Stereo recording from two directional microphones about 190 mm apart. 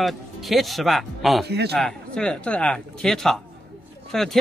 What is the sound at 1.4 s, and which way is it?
Speech, 60° right (ahead or behind).